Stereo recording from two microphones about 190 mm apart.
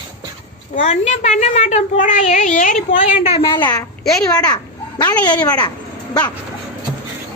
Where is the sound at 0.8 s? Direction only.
40° left (ahead or behind); by 5.7 s 20° left (ahead or behind).